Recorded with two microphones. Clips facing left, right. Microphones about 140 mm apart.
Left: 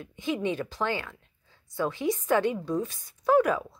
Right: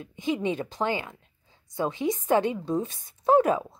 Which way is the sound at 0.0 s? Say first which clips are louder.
Right 2 dB; 20° right (ahead or behind).